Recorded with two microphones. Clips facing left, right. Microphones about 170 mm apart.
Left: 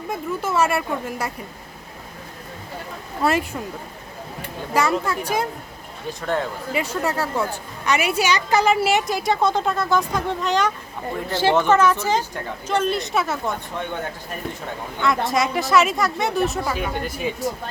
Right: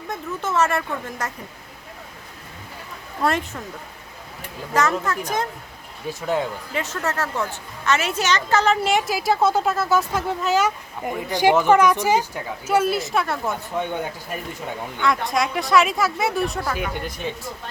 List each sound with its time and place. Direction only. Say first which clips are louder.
0.1 s speech: left 1 dB; 10° left (ahead or behind)
3.2 s speech: left 2 dB; 5° left (ahead or behind)
4.7 s speech: left 1 dB; 10° left (ahead or behind)
6.1 s a woman's voice: right 1 dB; 5° right (ahead or behind)
6.7 s a woman's voice: left 2 dB; 10° left (ahead or behind)
15.3 s a woman's voice: left 1 dB; centre (ahead or behind)